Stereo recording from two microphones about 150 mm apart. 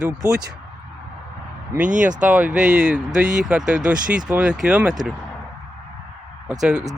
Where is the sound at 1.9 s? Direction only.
55° right (ahead or behind).